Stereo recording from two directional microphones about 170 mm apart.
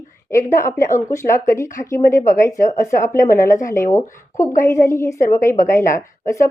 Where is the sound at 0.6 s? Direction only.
15° left (ahead or behind).